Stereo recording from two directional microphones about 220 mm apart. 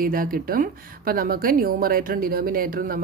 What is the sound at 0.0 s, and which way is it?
A woman's voice, 40° right (ahead or behind).